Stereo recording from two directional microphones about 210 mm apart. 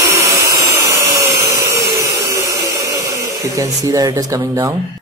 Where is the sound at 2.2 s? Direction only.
15° right (ahead or behind).